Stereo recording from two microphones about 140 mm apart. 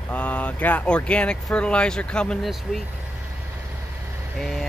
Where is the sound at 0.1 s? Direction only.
10° left (ahead or behind).